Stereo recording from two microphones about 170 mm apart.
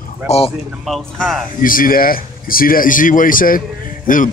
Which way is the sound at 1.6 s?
55° left (ahead or behind).